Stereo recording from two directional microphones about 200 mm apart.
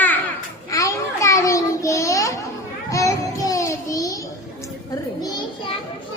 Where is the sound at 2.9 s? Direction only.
15° left (ahead or behind).